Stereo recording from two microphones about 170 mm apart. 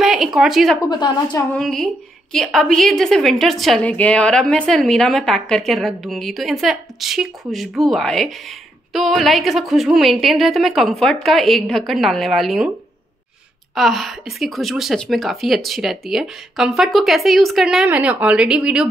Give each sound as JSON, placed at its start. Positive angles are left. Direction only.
{"t": 0.0, "sound": "speech", "side_deg": 0}
{"t": 0.8, "sound": "a woman's voice", "side_deg": 25}
{"t": 1.5, "sound": "a woman's voice", "side_deg": 0}
{"t": 13.7, "sound": "a woman's voice", "side_deg": 0}